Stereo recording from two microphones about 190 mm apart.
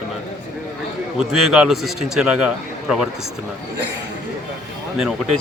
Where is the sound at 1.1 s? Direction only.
Centre (ahead or behind).